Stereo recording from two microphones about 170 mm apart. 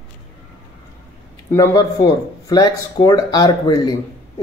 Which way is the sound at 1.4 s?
20° left (ahead or behind).